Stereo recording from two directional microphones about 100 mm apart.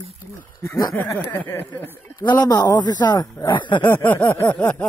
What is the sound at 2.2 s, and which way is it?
Speech, 45° left (ahead or behind).